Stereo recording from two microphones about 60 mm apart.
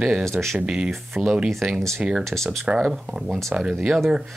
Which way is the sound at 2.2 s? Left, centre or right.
Centre.